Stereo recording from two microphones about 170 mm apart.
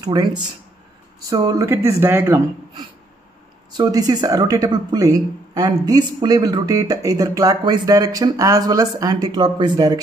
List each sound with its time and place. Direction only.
0.0 s speech: 25° right (ahead or behind)